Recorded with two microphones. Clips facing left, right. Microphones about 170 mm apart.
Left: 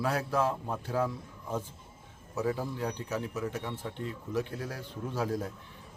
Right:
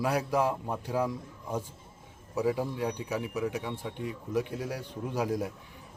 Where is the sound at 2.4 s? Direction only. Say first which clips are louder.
Right 3 dB; 10° right (ahead or behind).